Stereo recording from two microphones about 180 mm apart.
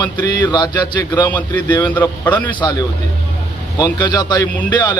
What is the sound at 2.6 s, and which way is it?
A man's voice, 20° left (ahead or behind).